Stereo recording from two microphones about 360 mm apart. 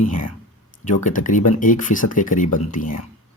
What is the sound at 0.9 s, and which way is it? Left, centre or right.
Speech, left.